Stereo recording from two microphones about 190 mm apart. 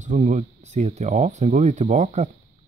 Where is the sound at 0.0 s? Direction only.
40° right (ahead or behind).